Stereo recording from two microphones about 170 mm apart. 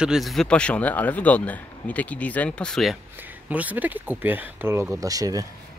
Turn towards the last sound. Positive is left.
turn(degrees=-20)  # may be behind; listen again after turning